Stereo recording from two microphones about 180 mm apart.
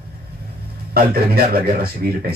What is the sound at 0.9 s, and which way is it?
Speech, 60° right (ahead or behind).